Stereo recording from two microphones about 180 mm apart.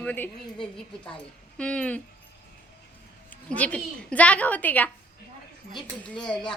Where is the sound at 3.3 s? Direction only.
5° left (ahead or behind).